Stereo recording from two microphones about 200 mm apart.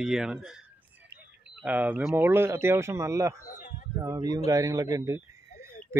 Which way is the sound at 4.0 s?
15° right (ahead or behind).